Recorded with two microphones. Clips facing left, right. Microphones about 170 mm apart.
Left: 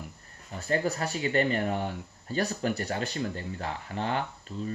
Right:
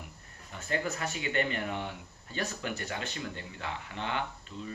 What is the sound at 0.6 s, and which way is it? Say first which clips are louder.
Speech: left 5 dB; 35° left (ahead or behind).